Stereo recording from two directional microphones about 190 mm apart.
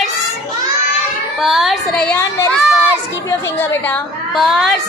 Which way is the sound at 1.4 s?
Centre (ahead or behind).